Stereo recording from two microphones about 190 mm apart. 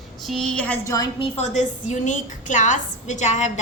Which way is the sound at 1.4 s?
35° left (ahead or behind).